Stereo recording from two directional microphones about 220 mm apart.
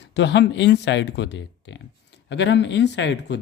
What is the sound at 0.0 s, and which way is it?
Speech, 50° left (ahead or behind).